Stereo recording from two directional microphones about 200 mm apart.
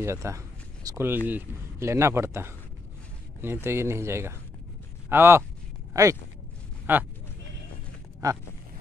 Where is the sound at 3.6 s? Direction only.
10° right (ahead or behind).